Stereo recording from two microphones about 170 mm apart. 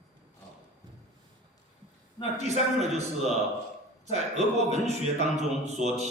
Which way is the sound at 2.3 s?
40° right (ahead or behind).